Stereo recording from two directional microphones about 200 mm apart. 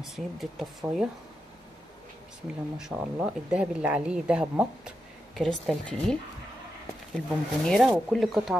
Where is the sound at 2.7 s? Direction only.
5° right (ahead or behind).